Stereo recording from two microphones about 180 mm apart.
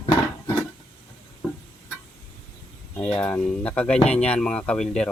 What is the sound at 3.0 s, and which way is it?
Speech, 10° left (ahead or behind).